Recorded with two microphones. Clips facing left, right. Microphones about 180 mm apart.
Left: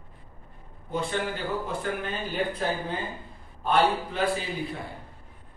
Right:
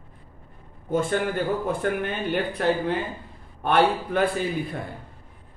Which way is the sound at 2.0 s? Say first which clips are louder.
Right 4 dB; 65° right (ahead or behind).